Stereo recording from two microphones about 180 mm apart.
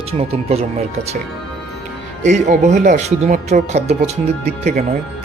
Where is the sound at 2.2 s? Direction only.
40° right (ahead or behind).